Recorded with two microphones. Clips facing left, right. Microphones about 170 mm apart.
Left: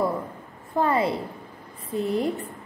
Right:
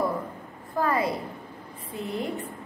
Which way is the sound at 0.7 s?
25° left (ahead or behind).